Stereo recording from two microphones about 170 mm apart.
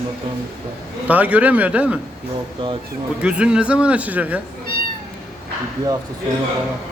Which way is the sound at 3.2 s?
5° right (ahead or behind).